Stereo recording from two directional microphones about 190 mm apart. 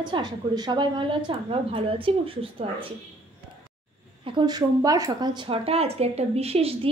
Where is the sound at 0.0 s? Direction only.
25° right (ahead or behind).